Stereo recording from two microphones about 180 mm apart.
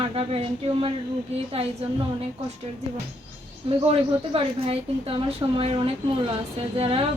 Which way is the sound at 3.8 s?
35° right (ahead or behind).